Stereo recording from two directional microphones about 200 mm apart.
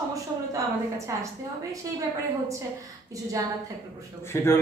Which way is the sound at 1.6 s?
15° right (ahead or behind).